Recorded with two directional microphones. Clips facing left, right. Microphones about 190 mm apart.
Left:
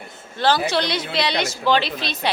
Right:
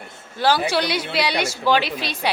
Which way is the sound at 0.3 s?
10° right (ahead or behind).